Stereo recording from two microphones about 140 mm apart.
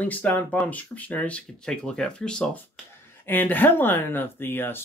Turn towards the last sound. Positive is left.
turn(degrees=15)  # may be behind; listen again after turning